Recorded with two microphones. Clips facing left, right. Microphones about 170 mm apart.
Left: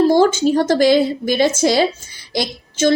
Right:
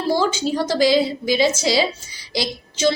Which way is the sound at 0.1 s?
50° left (ahead or behind).